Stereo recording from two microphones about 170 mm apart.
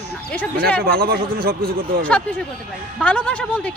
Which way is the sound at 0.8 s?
60° right (ahead or behind).